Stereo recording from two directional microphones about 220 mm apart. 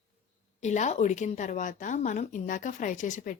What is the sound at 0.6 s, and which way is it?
Speech, 30° left (ahead or behind).